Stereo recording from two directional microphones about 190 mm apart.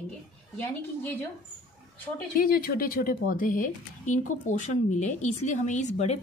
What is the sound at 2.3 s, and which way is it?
Speech, 50° left (ahead or behind).